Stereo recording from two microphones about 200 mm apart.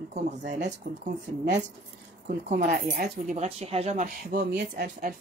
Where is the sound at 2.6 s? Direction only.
50° right (ahead or behind); by 4.0 s 30° right (ahead or behind).